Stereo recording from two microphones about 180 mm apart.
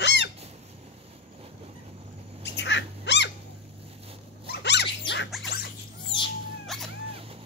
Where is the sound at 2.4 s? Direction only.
80° left.